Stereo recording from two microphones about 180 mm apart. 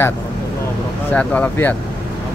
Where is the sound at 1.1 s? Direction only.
5° left (ahead or behind).